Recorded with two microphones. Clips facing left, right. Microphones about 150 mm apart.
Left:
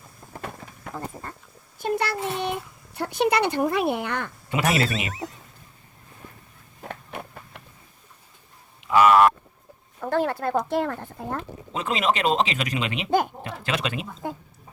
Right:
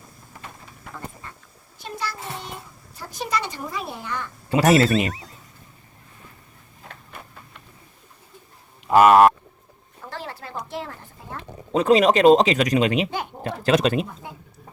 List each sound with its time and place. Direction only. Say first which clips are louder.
1.8 s a child's voice: left 7 dB; 65° left (ahead or behind)
4.4 s speech: right 7 dB; 40° right (ahead or behind)
4.9 s speech: right 8 dB; centre (ahead or behind)
6.8 s a sound: left 7 dB; 60° left (ahead or behind)
8.9 s speech: right 3 dB; 45° right (ahead or behind)
10.0 s a child's voice: left 11 dB; 55° left (ahead or behind)
11.7 s speech: right 8 dB; 40° right (ahead or behind)